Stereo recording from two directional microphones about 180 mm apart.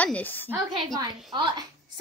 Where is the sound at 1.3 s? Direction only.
25° right (ahead or behind).